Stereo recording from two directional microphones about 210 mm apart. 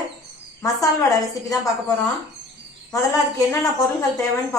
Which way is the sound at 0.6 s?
15° left (ahead or behind).